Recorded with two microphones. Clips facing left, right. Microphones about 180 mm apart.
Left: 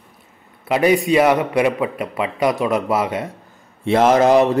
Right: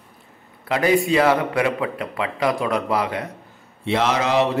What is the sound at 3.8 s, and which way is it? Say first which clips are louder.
Speech: left 7 dB; 50° left (ahead or behind).